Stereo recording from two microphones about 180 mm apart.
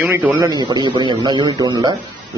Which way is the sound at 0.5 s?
25° right (ahead or behind).